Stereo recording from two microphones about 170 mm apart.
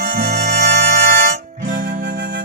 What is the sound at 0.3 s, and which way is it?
Music, 80° right.